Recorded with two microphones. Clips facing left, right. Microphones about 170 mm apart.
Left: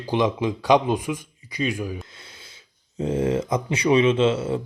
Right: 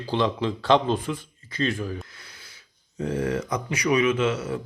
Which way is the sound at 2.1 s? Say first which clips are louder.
Left 3 dB; 25° left (ahead or behind).